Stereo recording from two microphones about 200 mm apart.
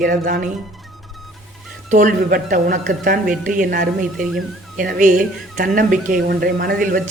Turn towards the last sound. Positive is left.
turn(degrees=-50)  # may be behind; listen again after turning